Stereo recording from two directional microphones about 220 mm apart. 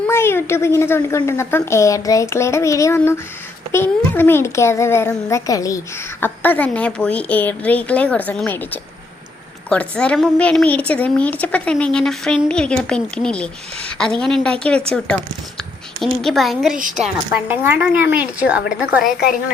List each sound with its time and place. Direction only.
0.1 s a child's voice: 10° left (ahead or behind)
16.7 s a woman's voice: 35° right (ahead or behind)
17.0 s a woman's voice: 5° right (ahead or behind)